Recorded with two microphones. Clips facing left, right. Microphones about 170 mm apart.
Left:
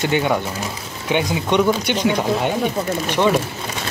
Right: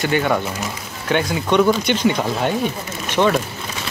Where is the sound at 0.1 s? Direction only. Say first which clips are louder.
Even; 10° left (ahead or behind).